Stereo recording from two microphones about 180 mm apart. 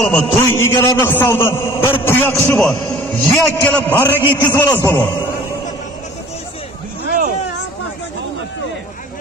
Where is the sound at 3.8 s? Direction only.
10° left (ahead or behind).